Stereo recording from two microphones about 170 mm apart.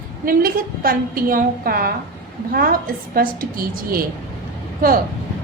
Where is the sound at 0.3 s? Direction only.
55° right (ahead or behind).